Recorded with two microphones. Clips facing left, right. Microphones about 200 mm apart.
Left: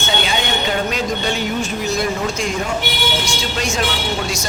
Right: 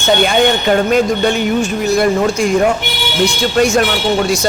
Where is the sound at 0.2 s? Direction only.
55° right (ahead or behind).